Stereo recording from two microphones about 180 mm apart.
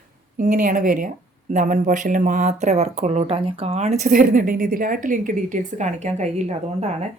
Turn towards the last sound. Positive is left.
turn(degrees=-35)  # may be behind; listen again after turning